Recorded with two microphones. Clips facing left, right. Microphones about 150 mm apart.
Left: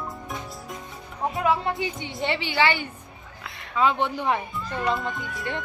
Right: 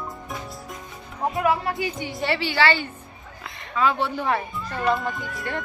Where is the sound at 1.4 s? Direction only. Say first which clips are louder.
Right 1 dB; 25° left (ahead or behind).